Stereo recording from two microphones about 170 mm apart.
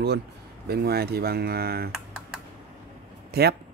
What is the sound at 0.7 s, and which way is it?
Speech, 70° right (ahead or behind).